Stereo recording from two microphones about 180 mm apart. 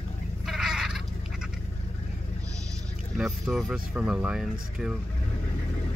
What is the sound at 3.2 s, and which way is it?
Speech, centre (ahead or behind).